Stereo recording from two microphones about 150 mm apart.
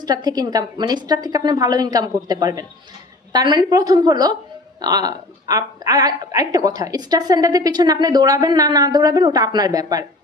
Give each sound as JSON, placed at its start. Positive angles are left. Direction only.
{"t": 0.0, "sound": "a woman's voice", "side_deg": -25}